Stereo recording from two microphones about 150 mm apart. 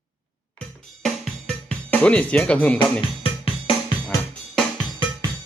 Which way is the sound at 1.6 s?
10° left (ahead or behind).